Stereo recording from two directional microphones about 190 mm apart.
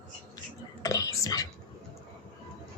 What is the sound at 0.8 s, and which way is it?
Whispering, 20° left (ahead or behind).